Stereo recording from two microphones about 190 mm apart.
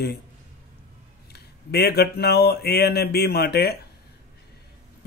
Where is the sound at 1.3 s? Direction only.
55° left (ahead or behind).